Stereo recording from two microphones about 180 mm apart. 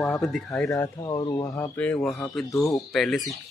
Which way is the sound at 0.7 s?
20° left (ahead or behind).